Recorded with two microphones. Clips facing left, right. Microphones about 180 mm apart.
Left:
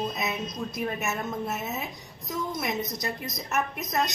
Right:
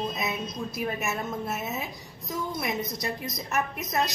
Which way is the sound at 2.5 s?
Centre (ahead or behind).